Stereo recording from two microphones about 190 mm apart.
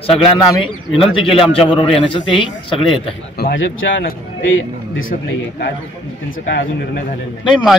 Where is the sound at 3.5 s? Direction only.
90° left.